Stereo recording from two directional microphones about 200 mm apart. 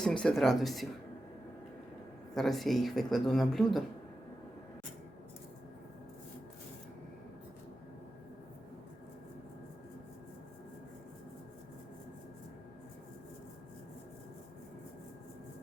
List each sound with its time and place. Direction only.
0.0 s speech: 5° left (ahead or behind)
2.3 s speech: centre (ahead or behind)